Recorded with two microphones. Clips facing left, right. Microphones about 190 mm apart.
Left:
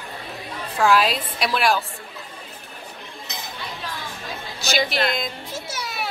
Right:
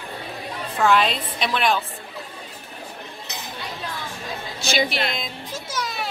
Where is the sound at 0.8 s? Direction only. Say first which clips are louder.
Left 1 dB; 5° left (ahead or behind).